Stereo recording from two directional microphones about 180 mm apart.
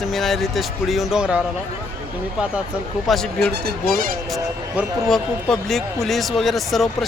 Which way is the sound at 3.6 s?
50° right (ahead or behind).